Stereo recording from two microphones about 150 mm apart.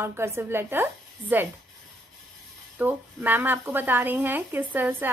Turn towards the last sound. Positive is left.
turn(degrees=-10)  # may be behind; listen again after turning